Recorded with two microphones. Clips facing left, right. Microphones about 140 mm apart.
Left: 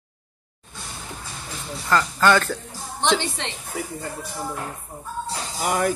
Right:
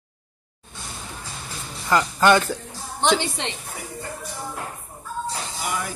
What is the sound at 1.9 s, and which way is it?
Speech, 15° right (ahead or behind).